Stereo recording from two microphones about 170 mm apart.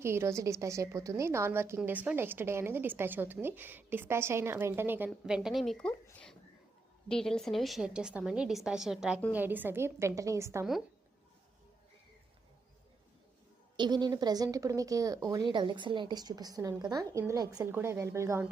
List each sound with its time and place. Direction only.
0.0 s a woman's voice: 15° right (ahead or behind); by 5.9 s 5° left (ahead or behind)
6.1 s a sound: 10° left (ahead or behind)
7.1 s a woman's voice: 5° left (ahead or behind); by 10.7 s 15° right (ahead or behind)
13.7 s speech: 25° right (ahead or behind)